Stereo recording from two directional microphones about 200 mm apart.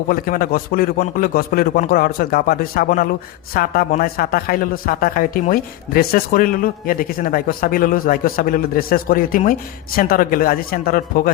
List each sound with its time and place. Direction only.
0.1 s speech: 45° left (ahead or behind)